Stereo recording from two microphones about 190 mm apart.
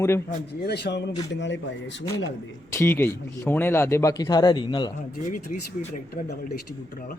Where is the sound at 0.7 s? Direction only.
60° left (ahead or behind).